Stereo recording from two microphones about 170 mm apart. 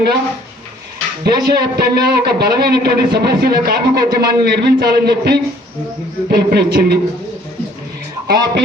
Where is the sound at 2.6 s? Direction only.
70° right (ahead or behind).